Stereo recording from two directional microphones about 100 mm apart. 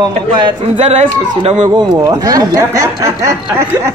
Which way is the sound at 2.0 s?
35° right (ahead or behind).